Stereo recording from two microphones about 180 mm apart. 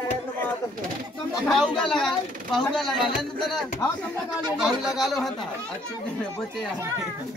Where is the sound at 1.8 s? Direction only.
5° left (ahead or behind).